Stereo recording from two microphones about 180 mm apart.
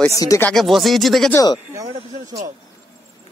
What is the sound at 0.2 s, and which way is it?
Speech, 20° left (ahead or behind).